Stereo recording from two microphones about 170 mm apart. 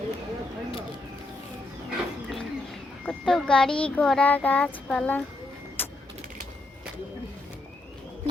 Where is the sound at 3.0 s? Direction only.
Centre (ahead or behind).